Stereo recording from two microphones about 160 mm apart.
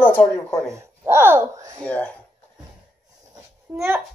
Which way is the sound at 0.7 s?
15° right (ahead or behind).